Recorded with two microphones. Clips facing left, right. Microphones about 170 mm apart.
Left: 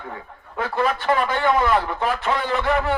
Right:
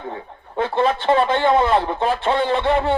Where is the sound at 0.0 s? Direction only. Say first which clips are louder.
Right 4 dB; 25° right (ahead or behind).